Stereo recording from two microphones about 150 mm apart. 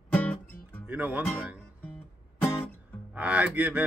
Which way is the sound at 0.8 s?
10° right (ahead or behind).